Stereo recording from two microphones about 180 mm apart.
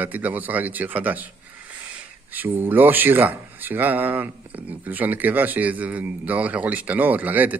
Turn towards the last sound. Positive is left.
turn(degrees=-10)  # may be behind; listen again after turning